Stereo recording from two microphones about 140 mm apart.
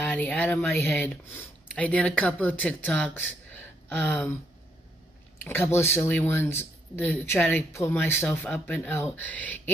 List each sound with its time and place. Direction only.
0.0 s speech: 10° left (ahead or behind)
5.4 s speech: 15° left (ahead or behind)